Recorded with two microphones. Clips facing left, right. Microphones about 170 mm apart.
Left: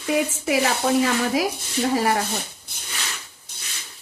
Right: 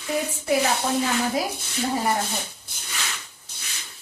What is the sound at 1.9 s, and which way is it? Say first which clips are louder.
Speech: left 3 dB; 90° left.